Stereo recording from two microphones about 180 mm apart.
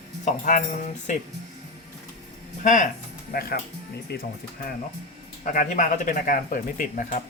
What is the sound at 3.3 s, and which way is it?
Speech, 60° left (ahead or behind).